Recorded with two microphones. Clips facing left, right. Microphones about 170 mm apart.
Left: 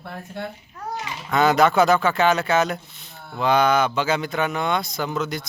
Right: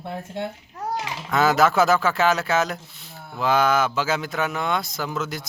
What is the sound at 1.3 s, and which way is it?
Speech, centre (ahead or behind).